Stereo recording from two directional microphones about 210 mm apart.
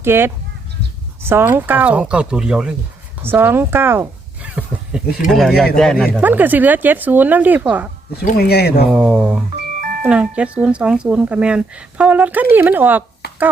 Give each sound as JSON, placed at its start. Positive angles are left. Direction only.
{"t": 0.0, "sound": "speech", "side_deg": -10}
{"t": 4.5, "sound": "a sound", "side_deg": -5}
{"t": 5.3, "sound": "speech", "side_deg": 0}
{"t": 8.2, "sound": "speech", "side_deg": 40}
{"t": 8.9, "sound": "speech", "side_deg": -5}